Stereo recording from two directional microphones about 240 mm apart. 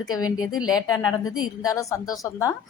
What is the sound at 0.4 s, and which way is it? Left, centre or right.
Speech, left.